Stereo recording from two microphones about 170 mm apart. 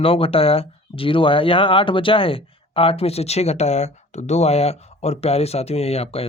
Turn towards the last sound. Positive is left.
turn(degrees=35)  # may be behind; listen again after turning